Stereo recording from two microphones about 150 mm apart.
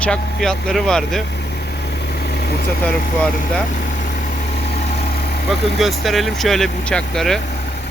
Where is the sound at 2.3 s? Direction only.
90° left.